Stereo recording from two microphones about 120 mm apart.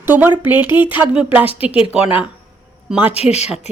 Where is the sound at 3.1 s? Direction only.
60° left (ahead or behind).